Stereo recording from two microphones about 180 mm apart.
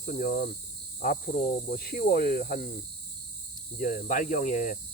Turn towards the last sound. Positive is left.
turn(degrees=45)  # may be behind; listen again after turning